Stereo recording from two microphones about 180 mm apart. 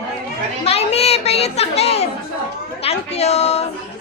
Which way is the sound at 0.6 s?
35° left (ahead or behind).